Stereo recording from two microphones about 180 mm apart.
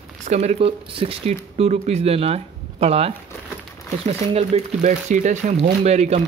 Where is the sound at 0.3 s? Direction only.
40° right (ahead or behind).